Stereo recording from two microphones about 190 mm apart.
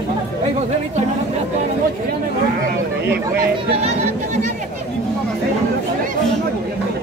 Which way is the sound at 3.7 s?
35° right (ahead or behind).